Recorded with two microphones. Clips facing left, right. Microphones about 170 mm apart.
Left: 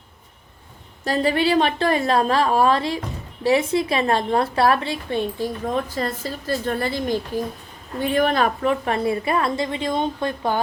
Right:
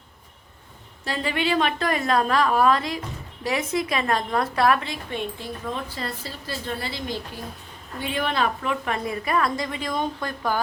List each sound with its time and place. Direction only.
1.0 s a woman's voice: 40° left (ahead or behind)
5.7 s a woman's voice: 45° left (ahead or behind); by 10.6 s 25° left (ahead or behind)